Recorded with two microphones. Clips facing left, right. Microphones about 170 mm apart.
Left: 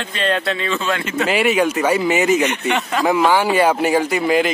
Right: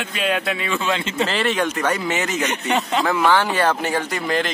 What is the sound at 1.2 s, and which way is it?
Speech, 10° left (ahead or behind).